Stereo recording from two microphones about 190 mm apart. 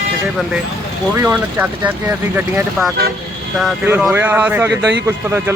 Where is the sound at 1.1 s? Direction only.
15° right (ahead or behind).